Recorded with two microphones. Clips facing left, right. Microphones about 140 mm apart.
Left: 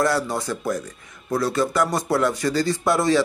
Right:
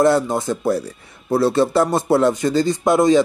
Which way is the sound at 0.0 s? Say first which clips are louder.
Right 6 dB; 25° right (ahead or behind).